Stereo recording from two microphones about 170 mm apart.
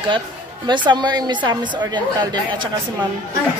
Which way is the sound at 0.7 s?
25° right (ahead or behind).